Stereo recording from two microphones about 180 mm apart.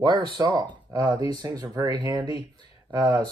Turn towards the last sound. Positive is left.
turn(degrees=-25)  # may be behind; listen again after turning